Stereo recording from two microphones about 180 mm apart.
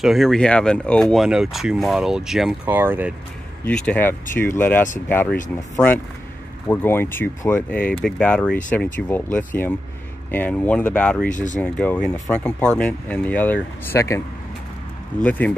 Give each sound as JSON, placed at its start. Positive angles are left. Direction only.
{"t": 0.0, "sound": "speech", "side_deg": 0}
{"t": 3.6, "sound": "speech", "side_deg": 5}
{"t": 6.7, "sound": "speech", "side_deg": 10}
{"t": 11.2, "sound": "speech", "side_deg": 45}
{"t": 11.6, "sound": "speech", "side_deg": 5}
{"t": 15.2, "sound": "speech", "side_deg": 10}